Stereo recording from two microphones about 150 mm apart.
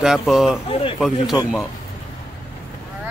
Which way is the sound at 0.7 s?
40° left (ahead or behind).